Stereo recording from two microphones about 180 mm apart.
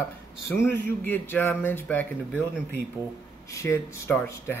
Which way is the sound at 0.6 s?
10° left (ahead or behind).